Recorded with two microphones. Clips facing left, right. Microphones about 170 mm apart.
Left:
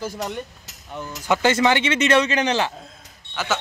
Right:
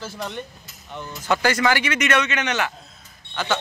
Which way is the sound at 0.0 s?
15° left (ahead or behind).